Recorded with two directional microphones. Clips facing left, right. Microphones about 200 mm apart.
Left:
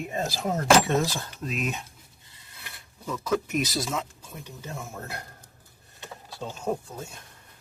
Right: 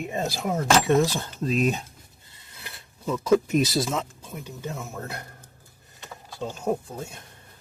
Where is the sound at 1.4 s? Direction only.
35° right (ahead or behind).